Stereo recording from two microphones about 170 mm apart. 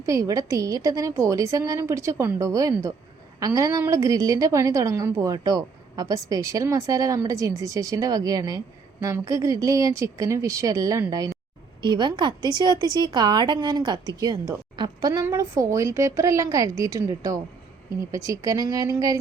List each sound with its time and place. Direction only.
0.0 s a woman's voice: 20° right (ahead or behind)